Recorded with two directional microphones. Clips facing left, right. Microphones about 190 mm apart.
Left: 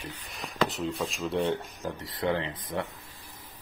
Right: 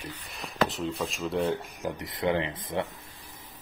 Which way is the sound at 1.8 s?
20° right (ahead or behind).